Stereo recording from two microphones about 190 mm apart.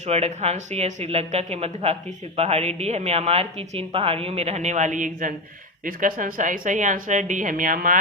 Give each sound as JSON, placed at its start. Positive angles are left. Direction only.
{"t": 0.1, "sound": "a woman's voice", "side_deg": -35}